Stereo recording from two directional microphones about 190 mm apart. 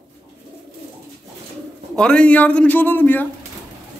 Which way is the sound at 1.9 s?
5° left (ahead or behind).